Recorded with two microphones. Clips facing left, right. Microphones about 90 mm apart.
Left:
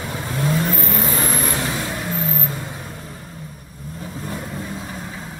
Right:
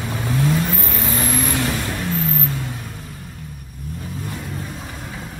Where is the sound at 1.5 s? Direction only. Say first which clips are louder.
Right 2 dB; 20° left (ahead or behind).